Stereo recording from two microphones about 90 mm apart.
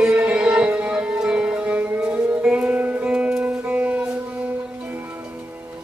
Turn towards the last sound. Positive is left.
turn(degrees=-15)  # may be behind; listen again after turning